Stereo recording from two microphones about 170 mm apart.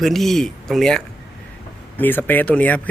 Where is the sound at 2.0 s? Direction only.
10° left (ahead or behind).